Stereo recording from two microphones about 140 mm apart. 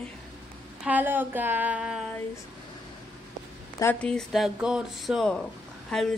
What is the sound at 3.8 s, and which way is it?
Speech, 10° left (ahead or behind).